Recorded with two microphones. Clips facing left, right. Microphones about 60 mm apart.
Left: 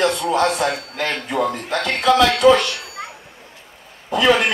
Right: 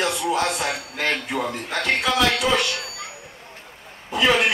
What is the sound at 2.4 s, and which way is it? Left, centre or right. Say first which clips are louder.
Speech: left 8 dB; left.